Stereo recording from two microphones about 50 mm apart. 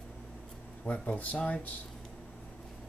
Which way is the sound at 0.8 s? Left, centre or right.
Left.